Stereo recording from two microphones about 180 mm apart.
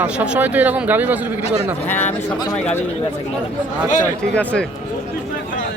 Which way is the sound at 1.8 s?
10° left (ahead or behind).